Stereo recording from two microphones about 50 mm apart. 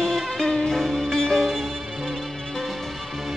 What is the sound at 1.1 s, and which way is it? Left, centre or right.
Music, centre.